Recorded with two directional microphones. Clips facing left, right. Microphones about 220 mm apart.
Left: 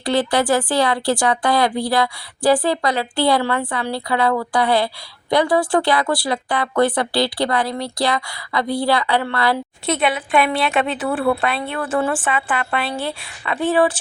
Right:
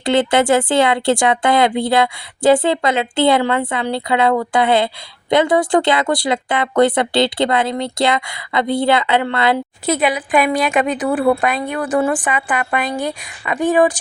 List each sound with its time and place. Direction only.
0.0 s speech: 25° right (ahead or behind)
9.8 s a woman's voice: centre (ahead or behind)
10.9 s a woman's voice: 15° right (ahead or behind)